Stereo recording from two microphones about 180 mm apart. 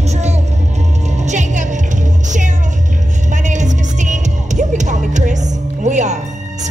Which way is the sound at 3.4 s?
40° right (ahead or behind).